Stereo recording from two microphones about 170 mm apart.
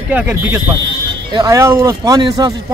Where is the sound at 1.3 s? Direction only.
20° right (ahead or behind).